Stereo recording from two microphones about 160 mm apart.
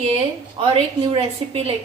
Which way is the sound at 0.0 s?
40° right (ahead or behind).